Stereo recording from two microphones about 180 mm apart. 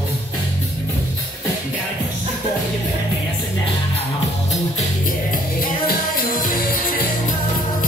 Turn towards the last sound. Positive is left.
turn(degrees=50)  # may be behind; listen again after turning